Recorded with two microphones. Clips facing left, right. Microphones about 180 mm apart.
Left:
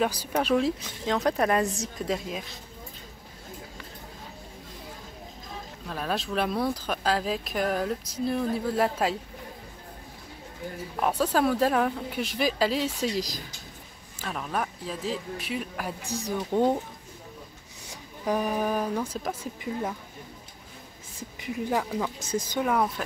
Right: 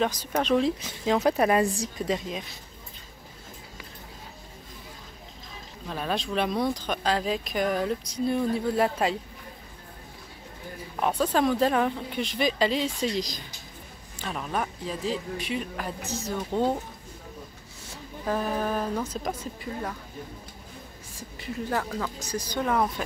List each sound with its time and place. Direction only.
0.0 s speech: 10° left (ahead or behind)
5.9 s speech: centre (ahead or behind)
11.0 s speech: 5° left (ahead or behind)
16.1 s speech: 15° left (ahead or behind)
17.8 s speech: 15° left (ahead or behind)
21.2 s speech: 15° left (ahead or behind)
22.6 s speech: 5° left (ahead or behind)